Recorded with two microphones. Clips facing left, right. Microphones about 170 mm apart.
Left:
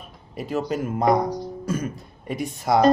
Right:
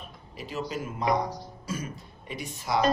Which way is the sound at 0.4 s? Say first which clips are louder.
Left 8 dB; 50° left (ahead or behind).